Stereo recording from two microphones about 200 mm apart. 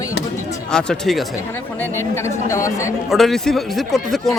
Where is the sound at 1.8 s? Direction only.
10° left (ahead or behind).